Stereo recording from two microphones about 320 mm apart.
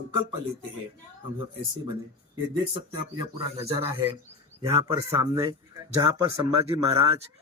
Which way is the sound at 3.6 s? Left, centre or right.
Centre.